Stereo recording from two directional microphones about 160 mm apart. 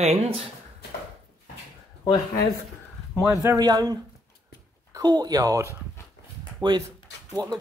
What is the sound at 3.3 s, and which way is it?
Speech, 25° right (ahead or behind).